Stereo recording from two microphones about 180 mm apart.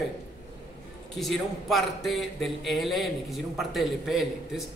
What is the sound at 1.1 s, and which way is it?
A man's voice, centre (ahead or behind).